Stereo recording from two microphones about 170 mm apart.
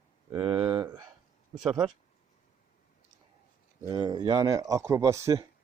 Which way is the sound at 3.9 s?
25° right (ahead or behind).